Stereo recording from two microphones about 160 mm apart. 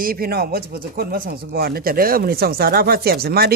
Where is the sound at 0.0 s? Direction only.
65° right (ahead or behind).